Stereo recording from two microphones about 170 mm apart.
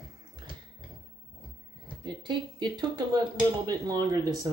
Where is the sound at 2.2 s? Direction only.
25° right (ahead or behind).